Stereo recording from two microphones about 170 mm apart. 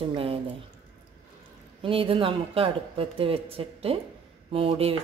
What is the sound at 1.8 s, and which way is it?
Speech, 35° right (ahead or behind).